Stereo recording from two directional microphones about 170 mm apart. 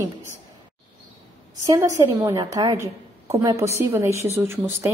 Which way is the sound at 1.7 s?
20° right (ahead or behind).